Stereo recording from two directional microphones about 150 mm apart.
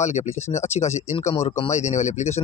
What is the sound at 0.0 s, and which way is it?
Speech, 50° left (ahead or behind).